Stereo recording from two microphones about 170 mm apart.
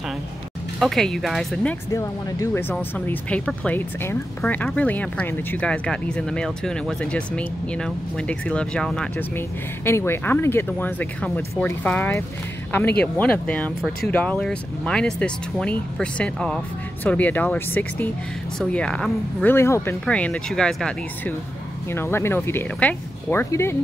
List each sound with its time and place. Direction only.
0.7 s speech: centre (ahead or behind)
1.9 s speech: 20° left (ahead or behind)
2.7 s speech: 5° left (ahead or behind)